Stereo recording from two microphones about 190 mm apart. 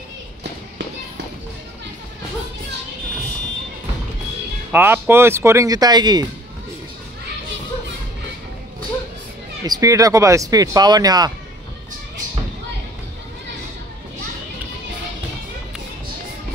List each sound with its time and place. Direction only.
4.7 s speech: 10° right (ahead or behind)
9.7 s speech: 15° right (ahead or behind)